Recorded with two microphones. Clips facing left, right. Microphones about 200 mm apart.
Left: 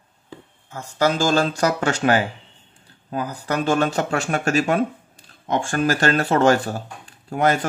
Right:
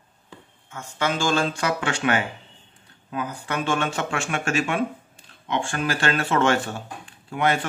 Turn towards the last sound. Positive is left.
turn(degrees=40)  # may be behind; listen again after turning